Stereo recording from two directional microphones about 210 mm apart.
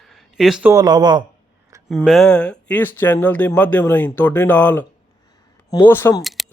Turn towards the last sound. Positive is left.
turn(degrees=0)  # may be behind; listen again after turning